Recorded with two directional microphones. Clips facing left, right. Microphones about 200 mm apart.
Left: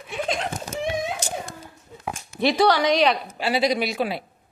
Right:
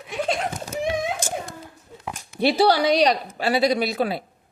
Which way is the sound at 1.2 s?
50° right (ahead or behind).